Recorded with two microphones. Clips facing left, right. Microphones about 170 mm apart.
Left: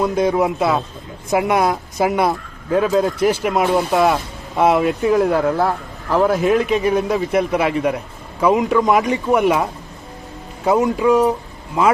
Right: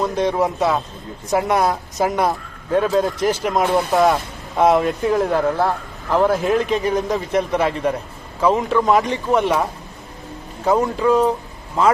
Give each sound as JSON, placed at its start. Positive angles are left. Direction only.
{"t": 0.0, "sound": "speech", "side_deg": 10}
{"t": 10.7, "sound": "speech", "side_deg": 10}